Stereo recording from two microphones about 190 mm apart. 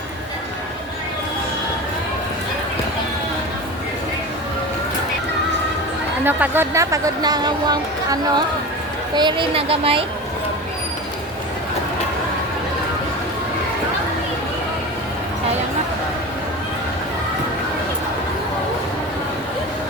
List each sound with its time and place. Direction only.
6.2 s a woman's voice: 10° right (ahead or behind); by 10.0 s 30° right (ahead or behind)